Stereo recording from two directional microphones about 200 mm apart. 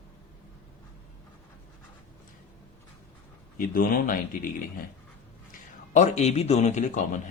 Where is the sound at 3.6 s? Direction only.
45° left (ahead or behind).